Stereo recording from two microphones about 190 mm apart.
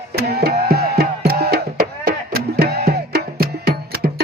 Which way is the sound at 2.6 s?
55° right (ahead or behind).